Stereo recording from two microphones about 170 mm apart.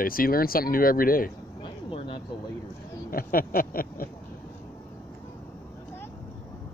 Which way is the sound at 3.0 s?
55° left (ahead or behind).